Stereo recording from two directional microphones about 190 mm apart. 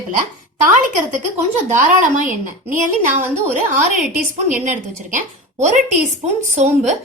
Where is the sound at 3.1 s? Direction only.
10° right (ahead or behind).